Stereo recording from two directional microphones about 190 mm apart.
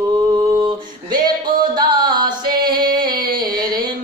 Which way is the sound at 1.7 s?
20° right (ahead or behind).